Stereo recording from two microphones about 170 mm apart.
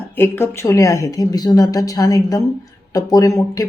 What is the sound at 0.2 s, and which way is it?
Speech, 15° left (ahead or behind).